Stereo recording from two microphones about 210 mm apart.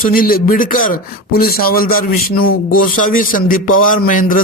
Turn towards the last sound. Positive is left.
turn(degrees=40)  # may be behind; listen again after turning